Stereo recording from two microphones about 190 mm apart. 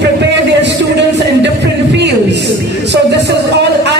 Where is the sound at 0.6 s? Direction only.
65° right (ahead or behind).